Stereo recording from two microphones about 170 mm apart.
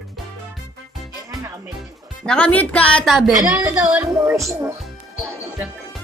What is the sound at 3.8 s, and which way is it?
Speech, 15° right (ahead or behind).